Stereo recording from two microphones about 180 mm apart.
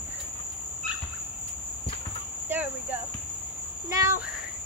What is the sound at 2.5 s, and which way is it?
Cricket, 10° right (ahead or behind).